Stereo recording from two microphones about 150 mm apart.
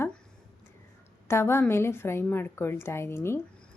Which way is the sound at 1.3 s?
15° left (ahead or behind).